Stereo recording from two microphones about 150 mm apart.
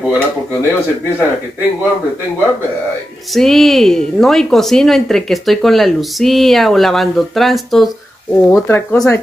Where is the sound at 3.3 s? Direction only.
Centre (ahead or behind).